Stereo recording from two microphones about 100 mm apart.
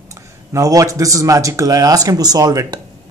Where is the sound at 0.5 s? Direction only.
35° right (ahead or behind).